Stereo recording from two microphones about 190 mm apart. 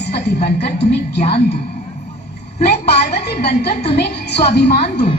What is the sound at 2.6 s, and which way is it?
A woman's voice, 60° left (ahead or behind).